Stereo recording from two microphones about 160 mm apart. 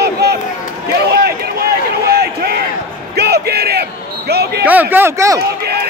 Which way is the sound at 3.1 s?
90° right.